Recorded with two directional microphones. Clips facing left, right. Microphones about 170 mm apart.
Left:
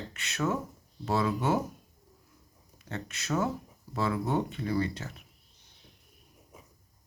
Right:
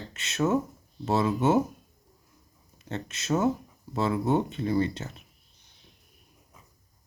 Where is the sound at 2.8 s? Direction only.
25° right (ahead or behind).